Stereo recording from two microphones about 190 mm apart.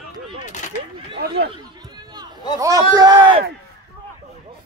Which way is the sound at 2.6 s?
15° right (ahead or behind).